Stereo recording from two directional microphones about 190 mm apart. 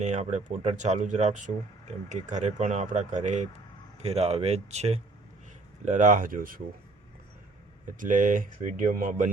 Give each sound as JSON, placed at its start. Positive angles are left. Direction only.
{"t": 0.0, "sound": "speech", "side_deg": -35}
{"t": 7.9, "sound": "speech", "side_deg": -40}